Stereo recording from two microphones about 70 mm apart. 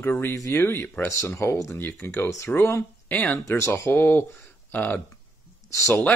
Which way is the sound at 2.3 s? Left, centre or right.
Left.